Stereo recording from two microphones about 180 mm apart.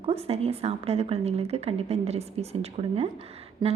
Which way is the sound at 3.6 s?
25° right (ahead or behind).